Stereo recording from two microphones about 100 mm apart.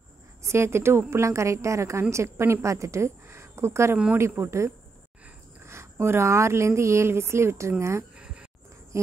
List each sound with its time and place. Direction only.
0.4 s a woman's voice: 25° right (ahead or behind)
8.9 s insect: 30° right (ahead or behind)